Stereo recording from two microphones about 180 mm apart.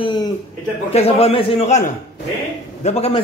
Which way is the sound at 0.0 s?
25° left (ahead or behind).